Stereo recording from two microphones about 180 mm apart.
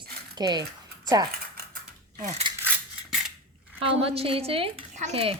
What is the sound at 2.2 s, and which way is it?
Speech, 40° right (ahead or behind).